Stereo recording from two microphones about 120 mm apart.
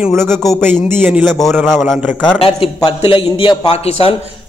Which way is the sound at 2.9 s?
50° left (ahead or behind).